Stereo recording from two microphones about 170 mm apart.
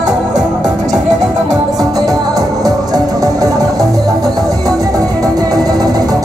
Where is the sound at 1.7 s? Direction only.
20° right (ahead or behind).